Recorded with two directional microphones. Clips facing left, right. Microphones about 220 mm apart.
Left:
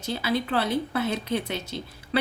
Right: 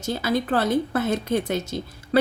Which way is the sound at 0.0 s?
45° right (ahead or behind).